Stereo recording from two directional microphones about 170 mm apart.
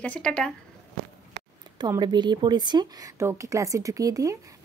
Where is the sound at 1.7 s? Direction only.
25° right (ahead or behind).